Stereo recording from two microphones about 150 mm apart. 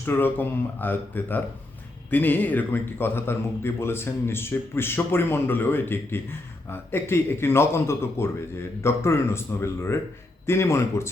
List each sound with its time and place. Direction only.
0.0 s a man's voice: 15° left (ahead or behind)